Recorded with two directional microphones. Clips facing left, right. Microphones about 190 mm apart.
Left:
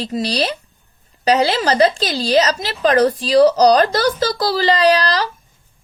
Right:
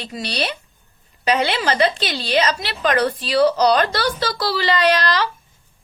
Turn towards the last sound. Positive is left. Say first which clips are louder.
# left 3 dB
turn(degrees=40)  # may be behind; listen again after turning